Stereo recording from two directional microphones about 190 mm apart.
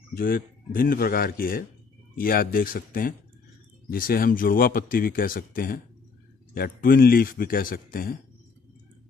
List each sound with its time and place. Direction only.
0.1 s speech: 50° left (ahead or behind)
6.8 s speech: 50° left (ahead or behind)